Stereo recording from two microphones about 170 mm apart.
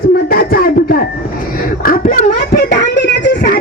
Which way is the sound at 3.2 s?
70° left (ahead or behind).